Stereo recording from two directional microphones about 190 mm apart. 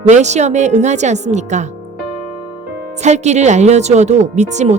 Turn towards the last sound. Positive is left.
turn(degrees=-40)  # may be behind; listen again after turning